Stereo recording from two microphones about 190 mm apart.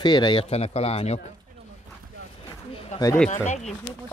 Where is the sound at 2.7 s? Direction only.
30° left (ahead or behind).